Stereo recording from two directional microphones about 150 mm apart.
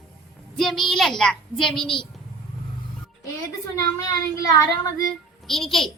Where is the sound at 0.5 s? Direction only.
Centre (ahead or behind).